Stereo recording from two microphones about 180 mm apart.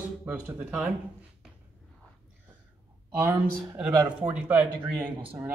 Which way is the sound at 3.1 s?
10° right (ahead or behind).